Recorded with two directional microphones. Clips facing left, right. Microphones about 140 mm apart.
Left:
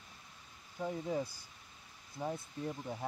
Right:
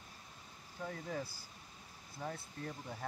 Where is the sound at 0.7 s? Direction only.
20° left (ahead or behind).